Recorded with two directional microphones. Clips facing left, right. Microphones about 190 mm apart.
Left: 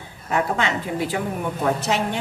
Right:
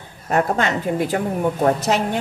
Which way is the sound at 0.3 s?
45° right (ahead or behind).